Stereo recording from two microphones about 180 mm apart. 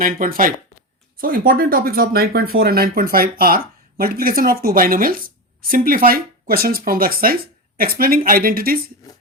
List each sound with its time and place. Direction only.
0.0 s speech: 50° right (ahead or behind)